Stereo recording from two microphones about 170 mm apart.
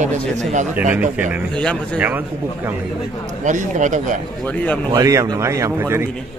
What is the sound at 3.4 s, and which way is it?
Speech, 45° right (ahead or behind).